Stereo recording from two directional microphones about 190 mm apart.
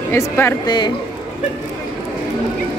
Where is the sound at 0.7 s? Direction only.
25° left (ahead or behind).